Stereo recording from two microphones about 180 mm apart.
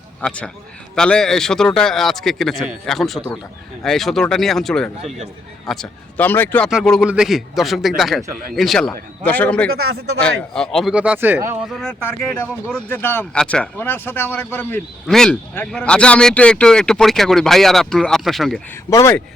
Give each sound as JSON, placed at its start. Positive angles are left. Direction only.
{"t": 0.2, "sound": "speech", "side_deg": 5}
{"t": 6.7, "sound": "speech", "side_deg": 0}
{"t": 11.7, "sound": "speech", "side_deg": 0}
{"t": 18.9, "sound": "speech", "side_deg": 15}